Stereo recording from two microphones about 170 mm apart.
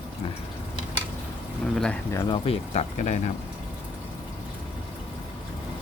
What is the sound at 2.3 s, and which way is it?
Speech, 35° left (ahead or behind).